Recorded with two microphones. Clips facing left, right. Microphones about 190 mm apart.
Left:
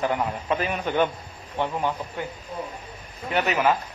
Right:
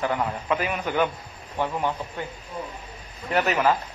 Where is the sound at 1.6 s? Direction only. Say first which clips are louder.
Even; 15° left (ahead or behind).